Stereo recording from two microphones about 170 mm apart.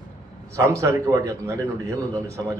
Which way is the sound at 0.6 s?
20° right (ahead or behind).